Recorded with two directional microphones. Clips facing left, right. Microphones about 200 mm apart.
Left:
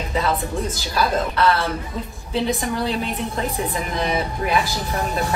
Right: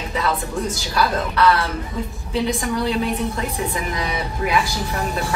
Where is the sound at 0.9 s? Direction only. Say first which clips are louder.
Even; 25° left (ahead or behind).